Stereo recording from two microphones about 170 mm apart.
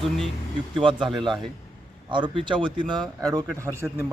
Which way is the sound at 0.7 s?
30° right (ahead or behind).